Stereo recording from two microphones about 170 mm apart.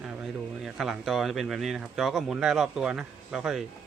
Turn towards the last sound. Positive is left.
turn(degrees=-5)  # may be behind; listen again after turning